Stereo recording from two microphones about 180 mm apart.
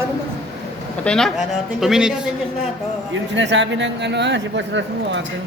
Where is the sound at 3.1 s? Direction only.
90° right.